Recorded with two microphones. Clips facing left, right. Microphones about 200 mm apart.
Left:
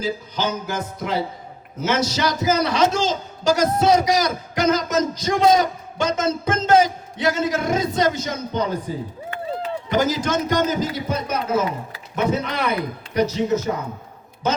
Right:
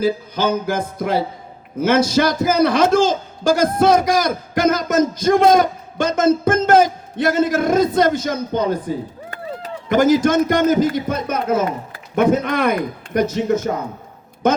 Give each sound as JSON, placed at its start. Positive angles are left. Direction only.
{"t": 0.0, "sound": "music", "side_deg": -55}
{"t": 1.8, "sound": "a man's voice", "side_deg": -55}
{"t": 9.9, "sound": "a man's voice", "side_deg": -50}